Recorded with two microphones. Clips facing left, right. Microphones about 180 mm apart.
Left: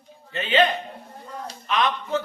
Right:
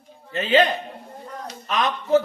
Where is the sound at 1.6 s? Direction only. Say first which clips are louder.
Even; 40° right (ahead or behind).